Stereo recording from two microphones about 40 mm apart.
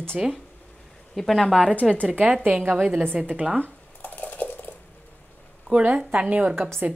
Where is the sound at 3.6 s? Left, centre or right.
Left.